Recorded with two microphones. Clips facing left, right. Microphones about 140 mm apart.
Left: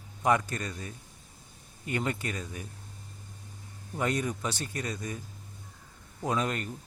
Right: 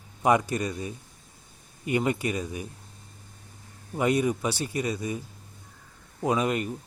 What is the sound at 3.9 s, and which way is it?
A man's voice, 10° right (ahead or behind).